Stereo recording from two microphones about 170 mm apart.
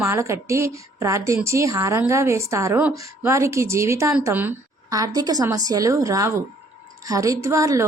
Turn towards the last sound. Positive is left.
turn(degrees=-20)  # may be behind; listen again after turning